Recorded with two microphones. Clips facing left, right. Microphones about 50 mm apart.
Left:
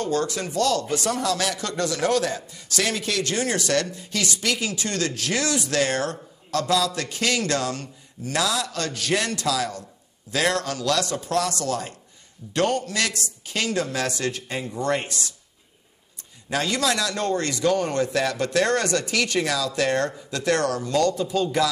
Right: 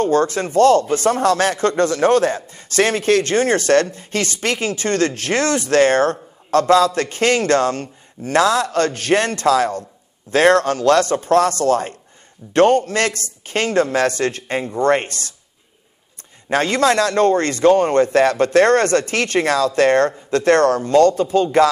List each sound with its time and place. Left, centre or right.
0.0 s speech: right
16.4 s speech: right